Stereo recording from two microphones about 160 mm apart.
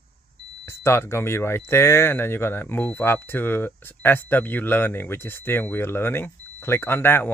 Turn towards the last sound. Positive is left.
turn(degrees=15)  # may be behind; listen again after turning